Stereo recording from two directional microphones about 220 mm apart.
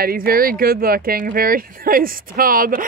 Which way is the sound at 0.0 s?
40° right (ahead or behind).